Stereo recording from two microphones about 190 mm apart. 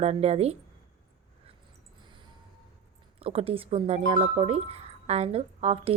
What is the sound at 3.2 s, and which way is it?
A woman's voice, 30° right (ahead or behind).